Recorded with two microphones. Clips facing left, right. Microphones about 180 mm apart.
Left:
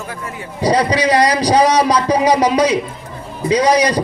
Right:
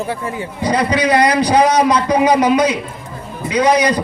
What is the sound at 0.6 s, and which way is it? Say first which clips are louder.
A man's voice: left 2 dB; 35° left (ahead or behind).